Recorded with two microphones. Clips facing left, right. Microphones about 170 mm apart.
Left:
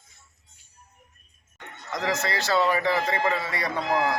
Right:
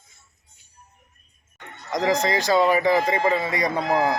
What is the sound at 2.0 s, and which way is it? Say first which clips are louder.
Speech: right 6 dB; 15° right (ahead or behind).